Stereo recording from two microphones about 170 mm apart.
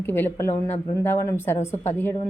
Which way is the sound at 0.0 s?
10° left (ahead or behind).